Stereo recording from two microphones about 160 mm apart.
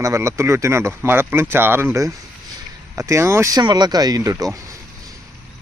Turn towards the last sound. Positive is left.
turn(degrees=-20)  # may be behind; listen again after turning